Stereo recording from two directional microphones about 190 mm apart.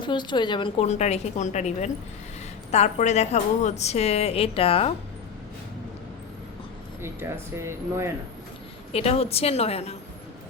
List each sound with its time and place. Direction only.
0.0 s a woman's voice: 25° left (ahead or behind)
7.0 s speech: 15° right (ahead or behind)
8.9 s a woman's voice: 30° left (ahead or behind)